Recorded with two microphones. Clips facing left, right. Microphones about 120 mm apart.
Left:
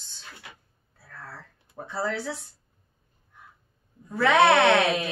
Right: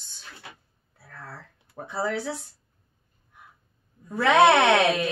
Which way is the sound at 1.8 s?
15° right (ahead or behind).